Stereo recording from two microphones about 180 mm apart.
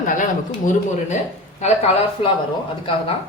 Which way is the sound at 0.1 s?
45° left (ahead or behind).